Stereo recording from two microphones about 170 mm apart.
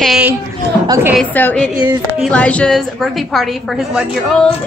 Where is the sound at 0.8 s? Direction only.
20° right (ahead or behind).